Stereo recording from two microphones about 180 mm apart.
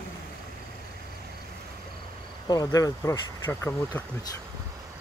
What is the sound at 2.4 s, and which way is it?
Speech, 20° left (ahead or behind).